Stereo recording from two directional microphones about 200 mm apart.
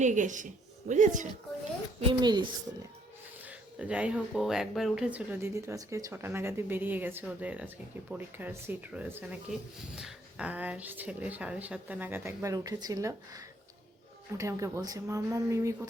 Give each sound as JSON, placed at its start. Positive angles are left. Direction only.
{"t": 0.0, "sound": "speech", "side_deg": -40}
{"t": 2.0, "sound": "a child's voice", "side_deg": -25}
{"t": 3.4, "sound": "speech", "side_deg": -5}